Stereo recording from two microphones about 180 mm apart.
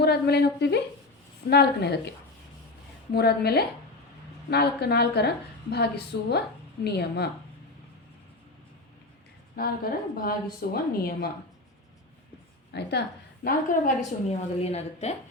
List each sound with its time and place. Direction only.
0.0 s a woman's voice: 65° left (ahead or behind)
3.1 s a woman's voice: 60° left (ahead or behind)
9.6 s a woman's voice: 55° left (ahead or behind)
12.7 s a woman's voice: 65° left (ahead or behind)
13.4 s a woman's voice: 50° left (ahead or behind)